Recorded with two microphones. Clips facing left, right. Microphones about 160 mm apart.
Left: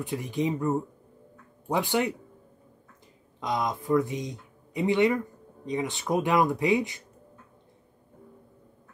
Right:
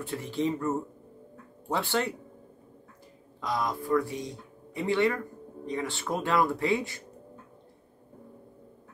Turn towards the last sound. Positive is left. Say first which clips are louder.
# left 3 dB
turn(degrees=15)  # may be behind; listen again after turning